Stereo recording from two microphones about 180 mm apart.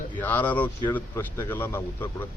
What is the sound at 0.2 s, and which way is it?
Speech, 10° left (ahead or behind).